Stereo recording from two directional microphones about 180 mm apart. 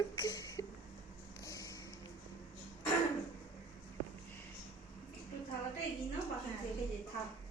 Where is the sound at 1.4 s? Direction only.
20° left (ahead or behind).